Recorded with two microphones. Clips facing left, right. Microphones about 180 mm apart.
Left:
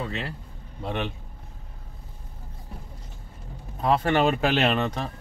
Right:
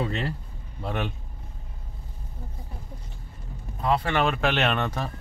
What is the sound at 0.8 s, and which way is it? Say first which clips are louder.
Speech: even; 5° right (ahead or behind).